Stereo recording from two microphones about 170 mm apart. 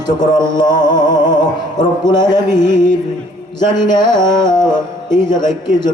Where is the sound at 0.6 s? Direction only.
25° left (ahead or behind).